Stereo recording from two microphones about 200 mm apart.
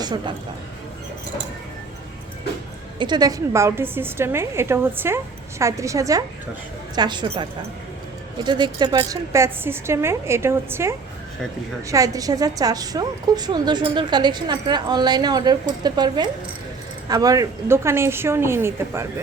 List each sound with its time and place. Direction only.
0.0 s a woman's voice: 20° right (ahead or behind)
3.0 s a woman's voice: 20° right (ahead or behind)
8.4 s a woman's voice: 20° right (ahead or behind)